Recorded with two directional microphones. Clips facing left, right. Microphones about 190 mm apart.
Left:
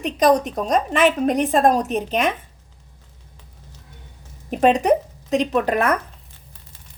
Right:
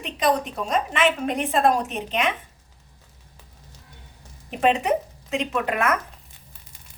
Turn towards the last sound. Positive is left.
turn(degrees=35)  # may be behind; listen again after turning